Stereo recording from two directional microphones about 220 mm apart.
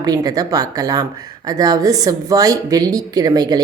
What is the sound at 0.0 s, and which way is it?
Speech, 15° right (ahead or behind).